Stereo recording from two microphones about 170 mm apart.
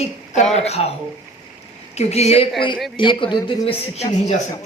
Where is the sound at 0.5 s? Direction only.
40° left (ahead or behind).